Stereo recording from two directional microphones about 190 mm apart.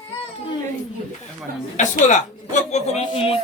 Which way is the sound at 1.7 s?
40° left (ahead or behind).